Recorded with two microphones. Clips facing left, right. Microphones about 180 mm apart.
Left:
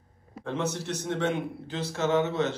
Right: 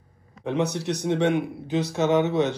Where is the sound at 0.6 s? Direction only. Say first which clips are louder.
Right 5 dB; 65° right (ahead or behind).